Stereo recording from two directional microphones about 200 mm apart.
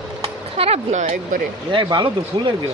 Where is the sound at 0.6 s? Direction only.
30° right (ahead or behind).